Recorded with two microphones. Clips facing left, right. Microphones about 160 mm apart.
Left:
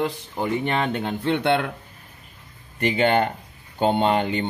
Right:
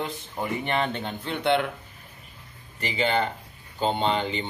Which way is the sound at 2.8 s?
60° left (ahead or behind).